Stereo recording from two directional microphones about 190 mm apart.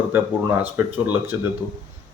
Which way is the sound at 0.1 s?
10° right (ahead or behind).